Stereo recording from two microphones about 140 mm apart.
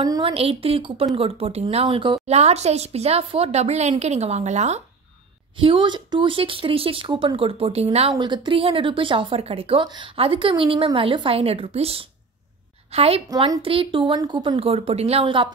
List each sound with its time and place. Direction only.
0.0 s a sound: 30° right (ahead or behind)
0.3 s a woman's voice: 45° right (ahead or behind)
2.2 s a woman's voice: 50° right (ahead or behind)
5.6 s speech: 35° right (ahead or behind)
8.2 s a woman's voice: 35° right (ahead or behind)